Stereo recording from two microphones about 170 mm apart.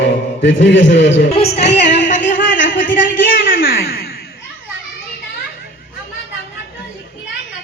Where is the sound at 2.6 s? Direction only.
90° left.